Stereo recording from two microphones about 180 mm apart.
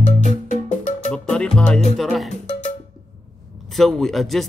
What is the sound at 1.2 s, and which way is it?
Music, 5° left (ahead or behind).